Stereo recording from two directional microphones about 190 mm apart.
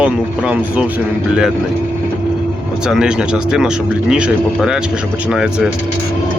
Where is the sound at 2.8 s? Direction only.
5° right (ahead or behind).